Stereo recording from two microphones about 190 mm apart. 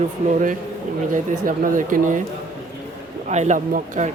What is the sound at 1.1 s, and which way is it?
Speech, 45° right (ahead or behind).